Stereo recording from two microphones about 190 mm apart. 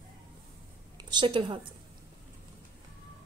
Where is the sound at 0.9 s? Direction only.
25° right (ahead or behind).